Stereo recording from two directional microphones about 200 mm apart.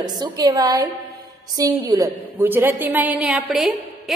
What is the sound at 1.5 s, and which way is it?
A woman's voice, 15° right (ahead or behind).